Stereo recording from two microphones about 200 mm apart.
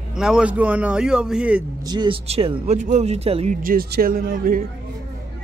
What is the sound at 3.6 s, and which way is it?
Speech, 45° right (ahead or behind).